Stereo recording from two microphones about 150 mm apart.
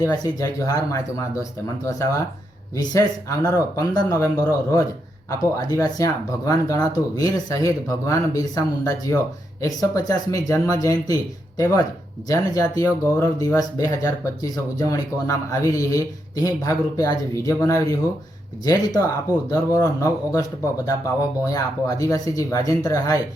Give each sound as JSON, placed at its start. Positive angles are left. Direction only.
{"t": 0.0, "sound": "speech", "side_deg": 25}
{"t": 21.5, "sound": "speech", "side_deg": 25}